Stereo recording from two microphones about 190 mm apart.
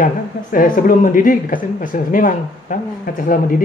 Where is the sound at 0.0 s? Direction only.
45° left (ahead or behind).